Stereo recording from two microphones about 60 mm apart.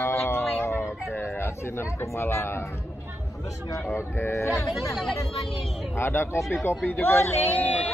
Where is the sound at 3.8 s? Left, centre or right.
Left.